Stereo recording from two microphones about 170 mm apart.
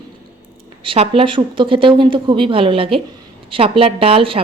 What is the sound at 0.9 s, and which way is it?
A woman's voice, 30° right (ahead or behind).